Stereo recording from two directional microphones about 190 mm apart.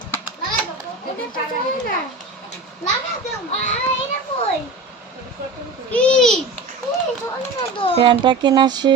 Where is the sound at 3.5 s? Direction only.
40° left (ahead or behind).